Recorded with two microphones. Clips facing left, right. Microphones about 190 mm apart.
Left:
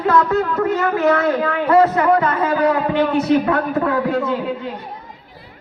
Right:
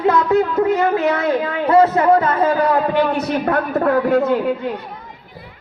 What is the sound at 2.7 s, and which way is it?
A man's voice, 40° right (ahead or behind).